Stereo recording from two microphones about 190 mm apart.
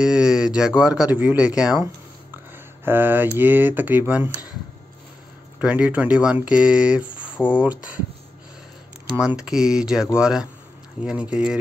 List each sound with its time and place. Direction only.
0.0 s speech: 5° right (ahead or behind)
5.6 s speech: 5° right (ahead or behind)
9.1 s speech: 5° right (ahead or behind)